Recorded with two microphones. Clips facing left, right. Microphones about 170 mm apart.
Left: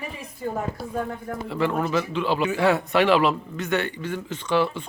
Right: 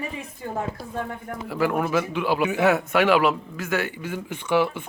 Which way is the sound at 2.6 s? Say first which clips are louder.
Even; centre (ahead or behind).